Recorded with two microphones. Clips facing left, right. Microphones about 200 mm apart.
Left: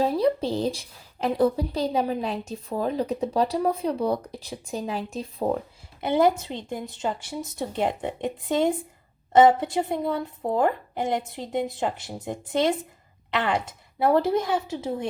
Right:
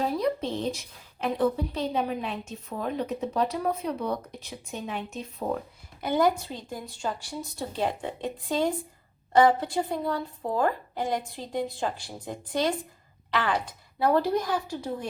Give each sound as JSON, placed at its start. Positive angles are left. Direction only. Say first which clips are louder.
{"t": 0.0, "sound": "a woman's voice", "louder": "left 5 dB", "side_deg": 30}